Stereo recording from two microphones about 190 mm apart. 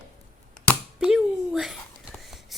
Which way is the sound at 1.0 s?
5° right (ahead or behind).